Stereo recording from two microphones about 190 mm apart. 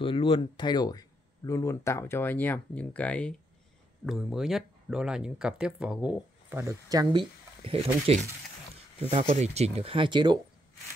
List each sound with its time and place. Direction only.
0.0 s speech: 25° left (ahead or behind); by 10.4 s 25° right (ahead or behind)